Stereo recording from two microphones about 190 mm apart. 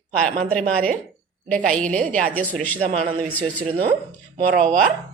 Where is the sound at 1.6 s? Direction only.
5° left (ahead or behind).